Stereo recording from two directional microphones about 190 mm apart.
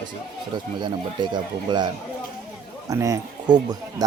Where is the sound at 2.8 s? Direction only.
15° right (ahead or behind).